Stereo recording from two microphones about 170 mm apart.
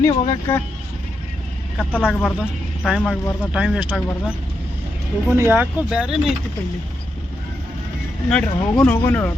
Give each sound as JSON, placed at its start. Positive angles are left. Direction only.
{"t": 0.0, "sound": "speech", "side_deg": 20}
{"t": 1.8, "sound": "speech", "side_deg": 10}
{"t": 2.4, "sound": "speech", "side_deg": 0}
{"t": 3.0, "sound": "speech", "side_deg": 10}
{"t": 3.5, "sound": "speech", "side_deg": -5}
{"t": 5.3, "sound": "speech", "side_deg": -10}
{"t": 8.3, "sound": "speech", "side_deg": 5}